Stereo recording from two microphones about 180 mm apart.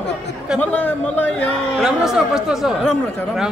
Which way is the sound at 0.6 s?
10° left (ahead or behind).